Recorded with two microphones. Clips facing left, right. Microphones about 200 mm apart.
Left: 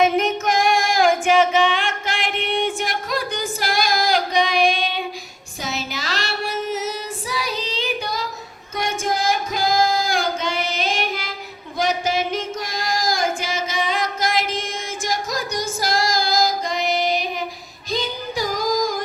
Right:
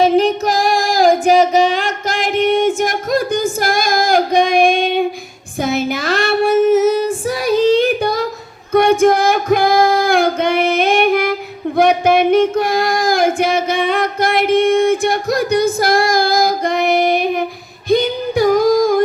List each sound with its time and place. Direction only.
0.0 s female singing: 30° right (ahead or behind); by 11.3 s 60° right (ahead or behind)
11.8 s child singing: 60° right (ahead or behind)
17.8 s music: 60° right (ahead or behind)